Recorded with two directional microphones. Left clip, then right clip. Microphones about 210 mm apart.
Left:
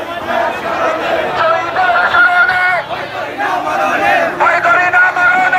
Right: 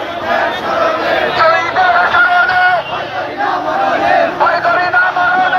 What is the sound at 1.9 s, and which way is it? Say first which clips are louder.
Music: left 3 dB; centre (ahead or behind).